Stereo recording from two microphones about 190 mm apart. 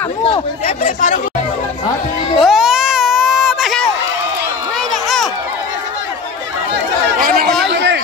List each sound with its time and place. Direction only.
0.7 s speech: 45° left (ahead or behind)
2.3 s baby cry: centre (ahead or behind)
7.7 s a sound: 70° right (ahead or behind)